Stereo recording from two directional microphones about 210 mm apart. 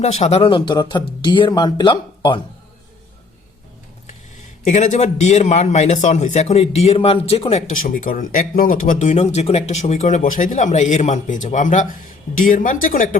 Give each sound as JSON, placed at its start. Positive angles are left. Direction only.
{"t": 0.0, "sound": "speech", "side_deg": 30}
{"t": 4.6, "sound": "a man's voice", "side_deg": 35}